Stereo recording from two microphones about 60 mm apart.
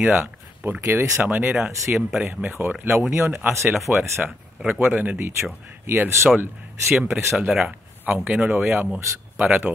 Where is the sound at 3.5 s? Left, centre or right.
Right.